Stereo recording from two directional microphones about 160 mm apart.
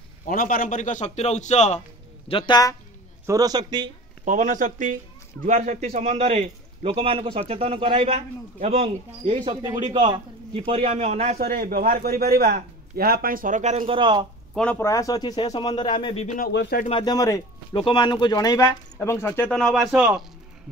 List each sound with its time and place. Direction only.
0.3 s a man's voice: 60° left (ahead or behind); by 1.8 s 45° left (ahead or behind)
2.2 s a man's voice: 30° left (ahead or behind)
3.3 s a man's voice: 25° right (ahead or behind)
4.2 s a man's voice: 50° right (ahead or behind)
11.3 s a man's voice: 65° right (ahead or behind); by 13.9 s 45° right (ahead or behind)
13.9 s a man's voice: 30° right (ahead or behind)
14.5 s speech: 5° left (ahead or behind)
14.8 s a man's voice: 20° left (ahead or behind)
16.3 s speech: 65° left (ahead or behind)
17.0 s a man's voice: 20° left (ahead or behind); by 20.1 s 5° right (ahead or behind)